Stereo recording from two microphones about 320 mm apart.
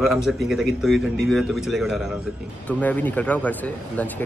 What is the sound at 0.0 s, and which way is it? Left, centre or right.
Speech, centre.